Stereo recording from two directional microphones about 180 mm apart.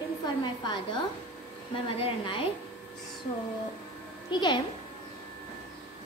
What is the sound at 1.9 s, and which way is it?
Speech, 30° left (ahead or behind).